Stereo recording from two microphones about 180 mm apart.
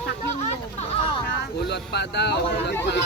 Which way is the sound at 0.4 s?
35° left (ahead or behind).